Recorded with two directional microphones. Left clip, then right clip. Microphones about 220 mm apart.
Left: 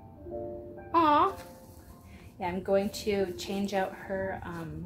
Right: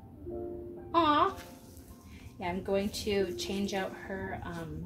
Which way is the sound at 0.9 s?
35° left (ahead or behind).